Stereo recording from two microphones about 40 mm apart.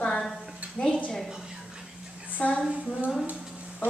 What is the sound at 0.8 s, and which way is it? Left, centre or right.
Speech, left.